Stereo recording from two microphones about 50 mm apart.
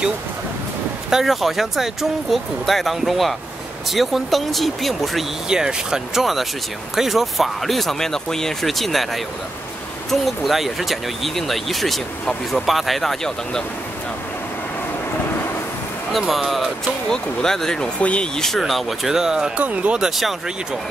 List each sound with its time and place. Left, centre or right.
1.1 s speech: centre
5.5 s speech: centre
16.2 s speech: centre
17.1 s speech: centre
17.9 s speech: left
18.3 s speech: centre
19.5 s speech: right
20.1 s speech: centre